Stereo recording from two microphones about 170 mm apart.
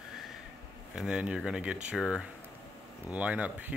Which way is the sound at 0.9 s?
5° right (ahead or behind).